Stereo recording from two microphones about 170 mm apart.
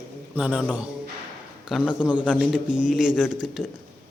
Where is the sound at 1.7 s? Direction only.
5° right (ahead or behind).